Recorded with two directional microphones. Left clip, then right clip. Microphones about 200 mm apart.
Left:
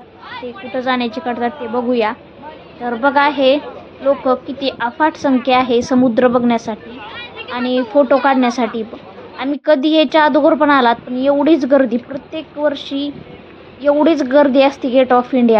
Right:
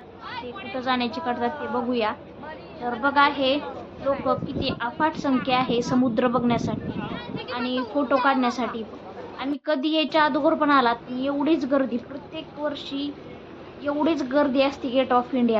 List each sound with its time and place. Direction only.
0.7 s a woman's voice: 20° left (ahead or behind)
2.8 s a woman's voice: 30° left (ahead or behind)